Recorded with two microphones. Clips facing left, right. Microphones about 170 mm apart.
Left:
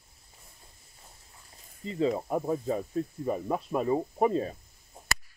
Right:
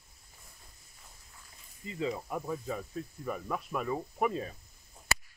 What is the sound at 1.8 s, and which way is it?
Speech, 35° left (ahead or behind).